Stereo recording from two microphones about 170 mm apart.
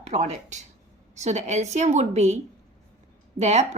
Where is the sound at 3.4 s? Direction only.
40° right (ahead or behind).